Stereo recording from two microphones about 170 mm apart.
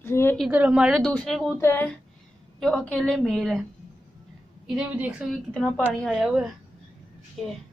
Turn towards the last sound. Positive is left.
turn(degrees=0)  # may be behind; listen again after turning